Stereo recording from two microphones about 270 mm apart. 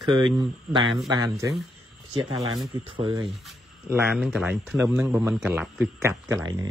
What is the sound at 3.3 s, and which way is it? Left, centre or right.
Speech, centre.